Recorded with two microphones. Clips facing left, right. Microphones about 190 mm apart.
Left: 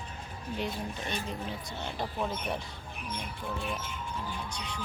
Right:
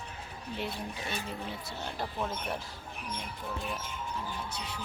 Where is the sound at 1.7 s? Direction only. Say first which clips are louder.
Left 1 dB; centre (ahead or behind).